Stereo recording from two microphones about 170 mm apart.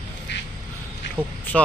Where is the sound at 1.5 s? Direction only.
10° left (ahead or behind).